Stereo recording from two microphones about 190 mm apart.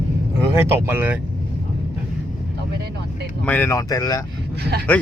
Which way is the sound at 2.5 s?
60° right (ahead or behind).